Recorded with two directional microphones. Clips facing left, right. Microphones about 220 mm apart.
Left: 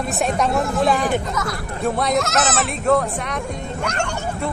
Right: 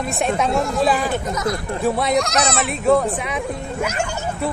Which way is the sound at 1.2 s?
20° right (ahead or behind).